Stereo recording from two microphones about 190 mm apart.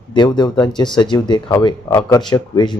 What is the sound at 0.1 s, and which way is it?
Speech, 25° left (ahead or behind).